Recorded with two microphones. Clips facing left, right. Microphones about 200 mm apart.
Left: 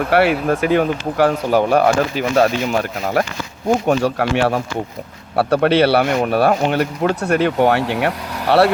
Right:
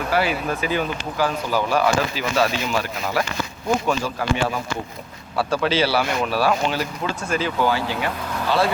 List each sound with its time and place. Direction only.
0.1 s speech: 65° left (ahead or behind)
3.8 s speech: 70° left (ahead or behind)